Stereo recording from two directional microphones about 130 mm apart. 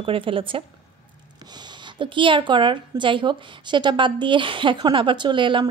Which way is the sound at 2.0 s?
40° right (ahead or behind).